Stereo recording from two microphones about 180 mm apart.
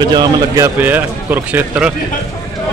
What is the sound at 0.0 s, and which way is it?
Speech, 25° right (ahead or behind).